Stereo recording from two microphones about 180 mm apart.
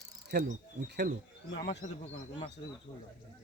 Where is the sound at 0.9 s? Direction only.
70° right (ahead or behind).